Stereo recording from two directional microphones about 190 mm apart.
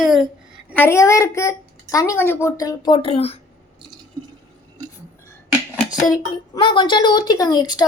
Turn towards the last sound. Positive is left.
turn(degrees=20)  # may be behind; listen again after turning